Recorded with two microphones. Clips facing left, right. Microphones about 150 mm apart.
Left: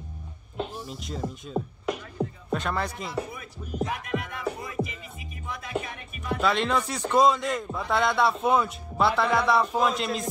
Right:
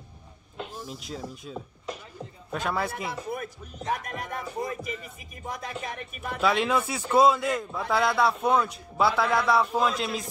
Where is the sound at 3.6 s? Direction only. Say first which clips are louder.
Left 7 dB; 10° left (ahead or behind).